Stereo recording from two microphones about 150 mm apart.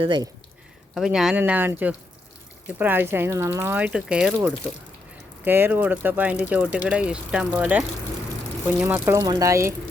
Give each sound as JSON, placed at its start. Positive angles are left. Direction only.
{"t": 0.0, "sound": "speech", "side_deg": -30}
{"t": 0.9, "sound": "speech", "side_deg": -5}
{"t": 5.5, "sound": "speech", "side_deg": -15}